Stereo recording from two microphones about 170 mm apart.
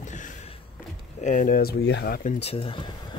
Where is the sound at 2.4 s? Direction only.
30° left (ahead or behind).